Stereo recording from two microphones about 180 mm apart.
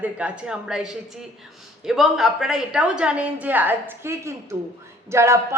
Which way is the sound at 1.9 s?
Centre (ahead or behind).